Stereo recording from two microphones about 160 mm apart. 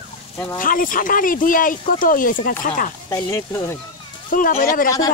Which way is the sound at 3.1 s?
20° left (ahead or behind).